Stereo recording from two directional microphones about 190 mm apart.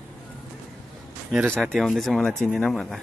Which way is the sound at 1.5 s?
5° left (ahead or behind).